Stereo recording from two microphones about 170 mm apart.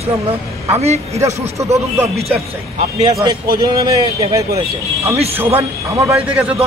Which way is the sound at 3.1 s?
20° right (ahead or behind).